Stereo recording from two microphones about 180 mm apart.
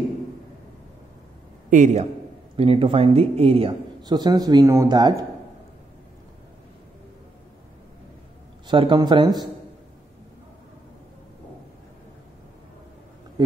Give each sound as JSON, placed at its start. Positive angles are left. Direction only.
{"t": 1.7, "sound": "a man's voice", "side_deg": -45}
{"t": 2.5, "sound": "a man's voice", "side_deg": -30}
{"t": 8.6, "sound": "a man's voice", "side_deg": -25}